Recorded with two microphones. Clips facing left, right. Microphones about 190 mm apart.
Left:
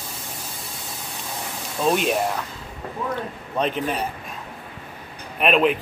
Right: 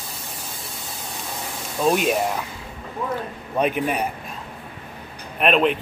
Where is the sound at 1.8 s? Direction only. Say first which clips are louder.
Right 1 dB; 5° right (ahead or behind).